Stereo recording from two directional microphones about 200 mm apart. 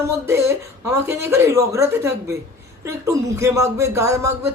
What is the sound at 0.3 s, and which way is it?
Speech, 15° right (ahead or behind).